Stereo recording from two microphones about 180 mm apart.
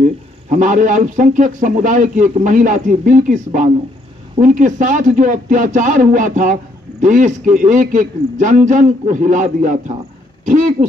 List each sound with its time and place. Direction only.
0.0 s a man's voice: 45° right (ahead or behind)